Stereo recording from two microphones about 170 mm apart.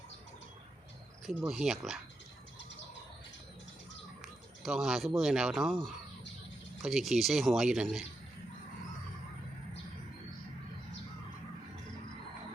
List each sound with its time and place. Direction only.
1.3 s speech: 5° right (ahead or behind)
4.6 s speech: centre (ahead or behind)